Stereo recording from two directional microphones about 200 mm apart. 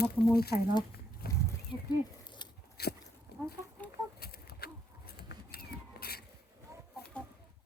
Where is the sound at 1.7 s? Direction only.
20° left (ahead or behind).